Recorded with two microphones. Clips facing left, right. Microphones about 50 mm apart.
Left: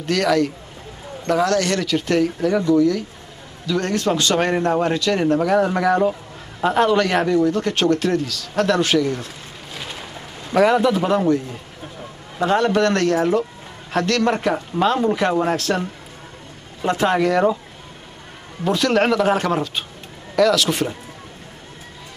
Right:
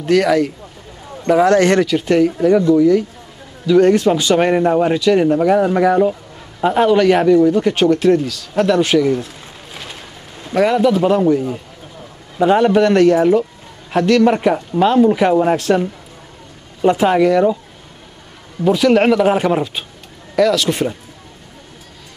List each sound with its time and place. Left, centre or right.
0.0 s speech: centre
10.5 s a man's voice: centre
18.6 s a man's voice: centre